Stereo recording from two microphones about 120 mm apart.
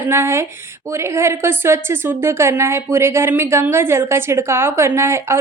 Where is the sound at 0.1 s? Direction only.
20° right (ahead or behind).